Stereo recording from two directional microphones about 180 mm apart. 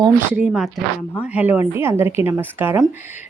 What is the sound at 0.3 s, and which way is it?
Speech, 5° right (ahead or behind).